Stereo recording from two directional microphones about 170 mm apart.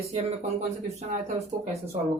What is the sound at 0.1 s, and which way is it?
Speech, 40° right (ahead or behind).